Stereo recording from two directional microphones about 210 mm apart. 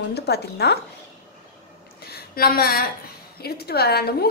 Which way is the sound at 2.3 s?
45° left (ahead or behind).